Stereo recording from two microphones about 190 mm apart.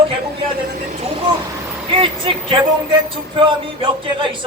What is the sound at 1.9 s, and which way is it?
Speech, 25° right (ahead or behind).